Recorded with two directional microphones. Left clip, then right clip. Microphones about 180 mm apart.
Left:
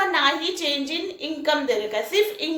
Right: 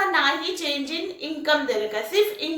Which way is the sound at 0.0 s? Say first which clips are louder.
Left 1 dB; 25° left (ahead or behind).